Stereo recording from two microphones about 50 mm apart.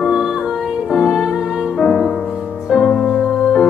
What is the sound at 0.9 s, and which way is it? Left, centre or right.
Music, centre.